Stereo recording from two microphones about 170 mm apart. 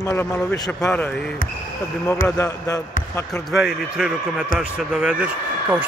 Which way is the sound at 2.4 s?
20° left (ahead or behind).